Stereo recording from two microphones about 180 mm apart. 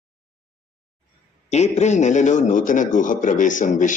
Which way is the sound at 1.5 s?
40° left (ahead or behind).